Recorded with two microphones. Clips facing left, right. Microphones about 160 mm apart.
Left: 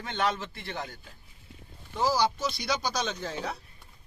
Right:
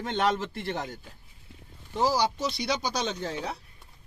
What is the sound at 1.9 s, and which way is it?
Speech, 30° right (ahead or behind).